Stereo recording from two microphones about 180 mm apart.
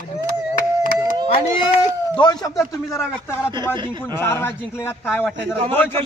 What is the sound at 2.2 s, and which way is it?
Speech, 20° left (ahead or behind).